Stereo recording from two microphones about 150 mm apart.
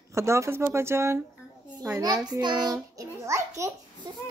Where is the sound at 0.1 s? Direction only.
20° right (ahead or behind).